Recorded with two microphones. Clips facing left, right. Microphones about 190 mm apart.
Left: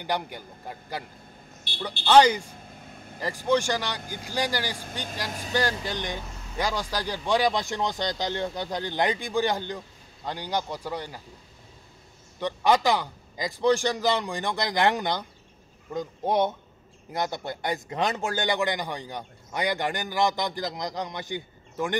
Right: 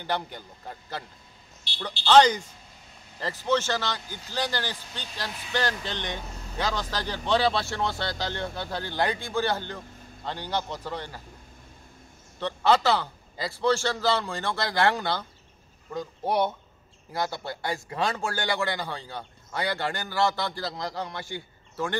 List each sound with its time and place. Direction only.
0.0 s speech: 10° left (ahead or behind)
1.7 s a woman's voice: 55° left (ahead or behind)
2.0 s speech: 10° left (ahead or behind)
2.7 s vehicle: 55° left (ahead or behind)
3.2 s speech: 15° left (ahead or behind)
12.4 s a man's voice: 15° left (ahead or behind)